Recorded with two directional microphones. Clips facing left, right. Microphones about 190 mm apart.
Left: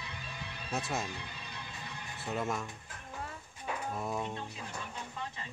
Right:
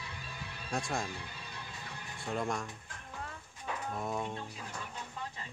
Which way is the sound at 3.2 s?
5° left (ahead or behind).